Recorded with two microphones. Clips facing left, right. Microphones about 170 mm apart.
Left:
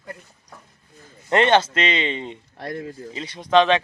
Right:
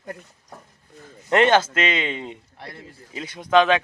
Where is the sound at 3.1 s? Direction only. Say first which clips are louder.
Even; 5° right (ahead or behind).